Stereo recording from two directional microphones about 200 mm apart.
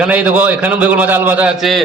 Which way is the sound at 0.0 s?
5° right (ahead or behind).